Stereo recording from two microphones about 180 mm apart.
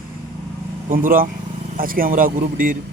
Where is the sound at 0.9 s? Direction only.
50° right (ahead or behind).